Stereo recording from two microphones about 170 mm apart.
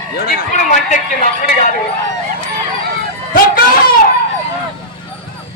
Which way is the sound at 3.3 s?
55° left (ahead or behind).